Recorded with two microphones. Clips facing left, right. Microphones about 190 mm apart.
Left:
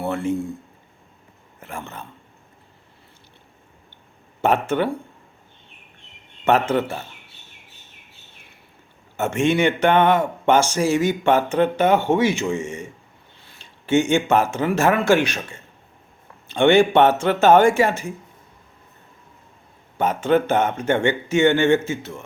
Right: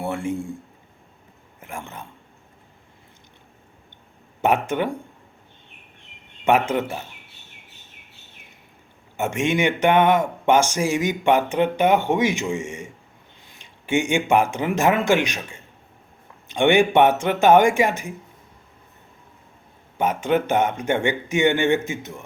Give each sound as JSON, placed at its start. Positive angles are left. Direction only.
{"t": 0.0, "sound": "a man's voice", "side_deg": -15}
{"t": 1.6, "sound": "speech", "side_deg": -15}
{"t": 4.4, "sound": "speech", "side_deg": -15}
{"t": 6.4, "sound": "speech", "side_deg": -15}
{"t": 9.1, "sound": "speech", "side_deg": -15}
{"t": 20.0, "sound": "speech", "side_deg": -10}